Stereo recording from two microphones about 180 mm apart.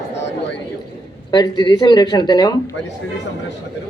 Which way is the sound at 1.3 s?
25° left (ahead or behind).